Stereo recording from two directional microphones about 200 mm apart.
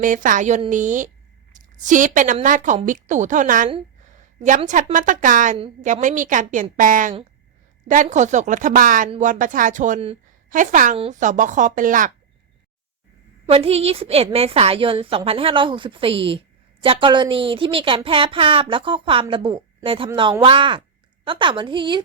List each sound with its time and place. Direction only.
0.0 s a woman's voice: 40° right (ahead or behind)
13.5 s a woman's voice: 30° right (ahead or behind)